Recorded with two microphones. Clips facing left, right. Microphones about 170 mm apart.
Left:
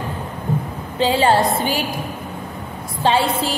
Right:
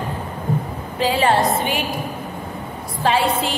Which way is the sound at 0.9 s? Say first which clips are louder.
Left 2 dB; 30° left (ahead or behind).